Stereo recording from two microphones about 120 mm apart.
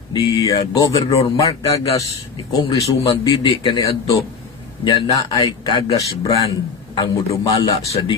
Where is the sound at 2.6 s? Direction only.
55° left (ahead or behind).